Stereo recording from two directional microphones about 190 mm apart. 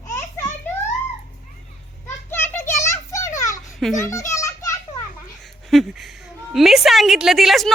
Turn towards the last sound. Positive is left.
turn(degrees=0)  # may be behind; listen again after turning